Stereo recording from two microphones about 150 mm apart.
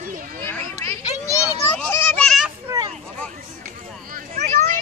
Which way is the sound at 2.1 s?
Centre (ahead or behind).